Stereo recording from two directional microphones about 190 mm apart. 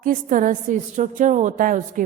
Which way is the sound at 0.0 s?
45° right (ahead or behind).